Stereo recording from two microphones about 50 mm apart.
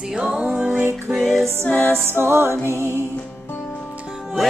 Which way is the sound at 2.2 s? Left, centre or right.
Right.